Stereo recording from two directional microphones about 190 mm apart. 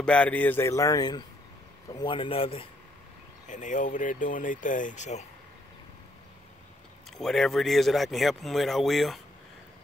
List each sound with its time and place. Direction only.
0.0 s speech: 5° left (ahead or behind); by 2.7 s 30° left (ahead or behind)
3.4 s speech: 40° left (ahead or behind)
7.1 s speech: centre (ahead or behind)